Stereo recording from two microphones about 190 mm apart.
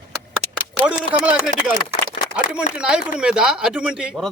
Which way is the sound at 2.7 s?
5° right (ahead or behind).